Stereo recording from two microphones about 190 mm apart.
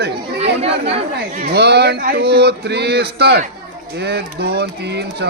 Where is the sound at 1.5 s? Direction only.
60° right (ahead or behind).